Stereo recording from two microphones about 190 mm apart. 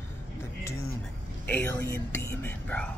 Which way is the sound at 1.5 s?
10° left (ahead or behind).